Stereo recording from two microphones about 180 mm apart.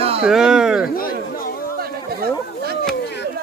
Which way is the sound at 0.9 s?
55° left (ahead or behind).